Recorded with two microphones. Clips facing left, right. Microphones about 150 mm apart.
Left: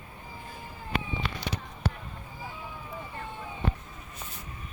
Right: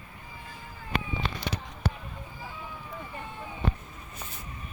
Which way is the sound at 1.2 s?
25° right (ahead or behind).